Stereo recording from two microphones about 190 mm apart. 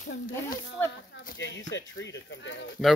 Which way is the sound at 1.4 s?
70° left (ahead or behind).